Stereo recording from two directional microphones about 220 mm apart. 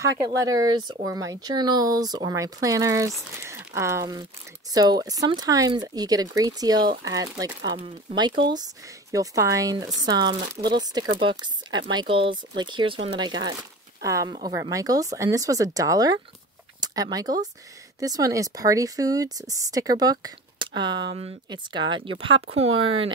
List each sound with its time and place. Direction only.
0.4 s speech: 15° right (ahead or behind)